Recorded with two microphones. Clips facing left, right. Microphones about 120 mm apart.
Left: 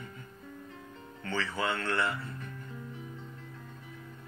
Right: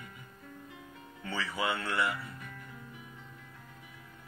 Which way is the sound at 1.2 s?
5° right (ahead or behind).